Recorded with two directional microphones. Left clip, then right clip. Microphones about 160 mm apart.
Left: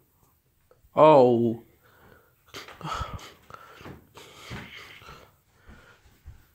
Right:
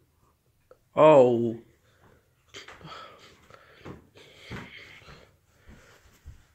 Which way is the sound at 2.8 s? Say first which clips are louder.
Left 10 dB; 60° left (ahead or behind).